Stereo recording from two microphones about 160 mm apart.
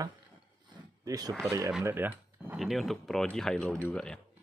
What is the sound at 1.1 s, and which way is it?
Speech, 25° right (ahead or behind).